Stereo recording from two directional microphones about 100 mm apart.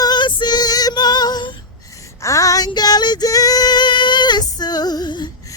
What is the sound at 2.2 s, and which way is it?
Female singing, 30° left (ahead or behind).